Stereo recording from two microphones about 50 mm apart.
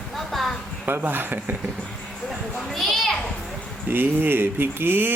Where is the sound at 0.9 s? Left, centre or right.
Right.